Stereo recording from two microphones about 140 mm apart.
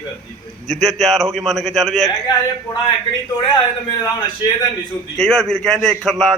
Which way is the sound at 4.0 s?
30° left (ahead or behind).